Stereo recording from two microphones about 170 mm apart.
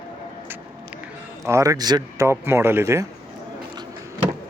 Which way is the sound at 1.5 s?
20° right (ahead or behind).